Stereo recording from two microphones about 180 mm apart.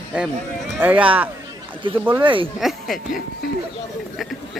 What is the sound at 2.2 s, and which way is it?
Speech, 30° right (ahead or behind).